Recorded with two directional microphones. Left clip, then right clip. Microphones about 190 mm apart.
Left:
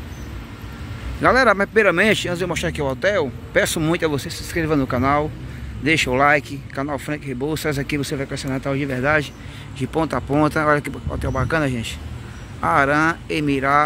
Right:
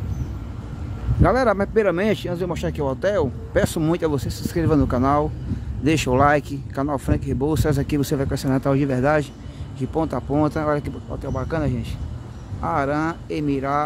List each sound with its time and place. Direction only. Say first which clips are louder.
1.2 s speech: left 4 dB; 15° right (ahead or behind)
9.8 s speech: left 2 dB; 10° right (ahead or behind)